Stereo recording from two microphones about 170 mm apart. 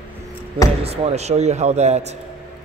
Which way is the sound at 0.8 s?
35° right (ahead or behind).